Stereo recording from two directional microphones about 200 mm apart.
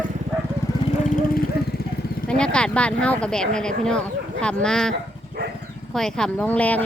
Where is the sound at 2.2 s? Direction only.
5° left (ahead or behind).